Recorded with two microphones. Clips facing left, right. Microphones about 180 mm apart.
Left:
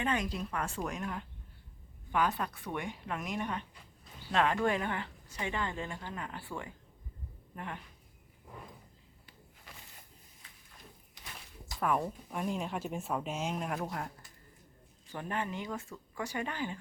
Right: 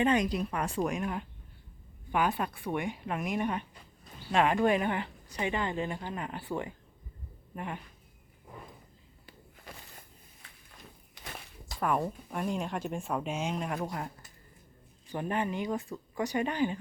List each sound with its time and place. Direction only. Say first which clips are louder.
0.0 s speech: right 7 dB; 20° right (ahead or behind)
7.5 s speech: right 4 dB; 15° right (ahead or behind)
11.8 s speech: right 2 dB; centre (ahead or behind)
15.0 s speech: right 5 dB; 15° right (ahead or behind)